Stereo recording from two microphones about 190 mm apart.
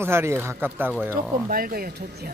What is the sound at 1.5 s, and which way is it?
Speech, 50° right (ahead or behind).